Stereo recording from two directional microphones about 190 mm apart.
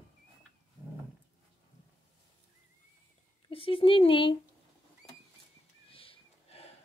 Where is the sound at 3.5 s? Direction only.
30° left (ahead or behind).